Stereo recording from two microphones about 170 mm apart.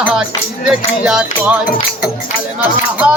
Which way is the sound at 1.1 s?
5° right (ahead or behind).